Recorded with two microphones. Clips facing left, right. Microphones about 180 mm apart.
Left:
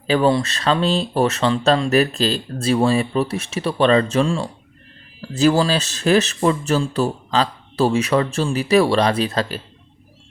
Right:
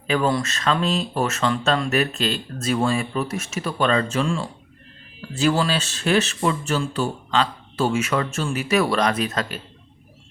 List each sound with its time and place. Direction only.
0.1 s speech: 30° left (ahead or behind)